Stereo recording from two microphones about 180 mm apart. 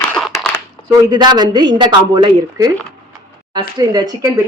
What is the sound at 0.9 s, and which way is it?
Speech, 20° right (ahead or behind).